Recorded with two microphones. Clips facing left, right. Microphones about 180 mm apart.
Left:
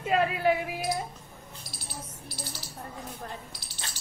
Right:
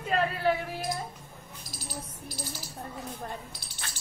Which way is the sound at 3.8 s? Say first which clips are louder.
Even; 20° left (ahead or behind).